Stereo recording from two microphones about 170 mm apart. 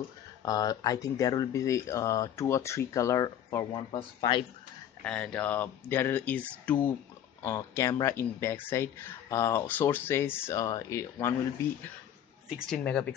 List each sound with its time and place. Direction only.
0.4 s speech: 25° left (ahead or behind)
5.0 s speech: 5° left (ahead or behind)
12.4 s a woman's voice: centre (ahead or behind)